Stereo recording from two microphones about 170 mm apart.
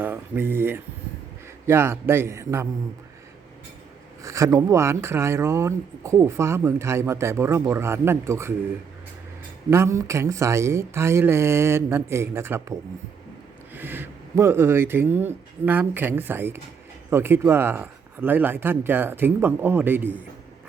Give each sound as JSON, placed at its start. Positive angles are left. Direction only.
{"t": 0.0, "sound": "speech", "side_deg": -10}
{"t": 4.2, "sound": "speech", "side_deg": -20}
{"t": 9.6, "sound": "speech", "side_deg": -15}